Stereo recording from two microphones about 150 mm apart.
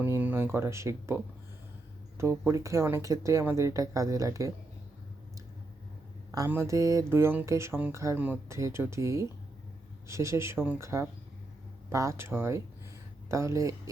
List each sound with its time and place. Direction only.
0.0 s speech: 10° right (ahead or behind)
2.3 s speech: 10° right (ahead or behind)
6.5 s speech: 20° right (ahead or behind)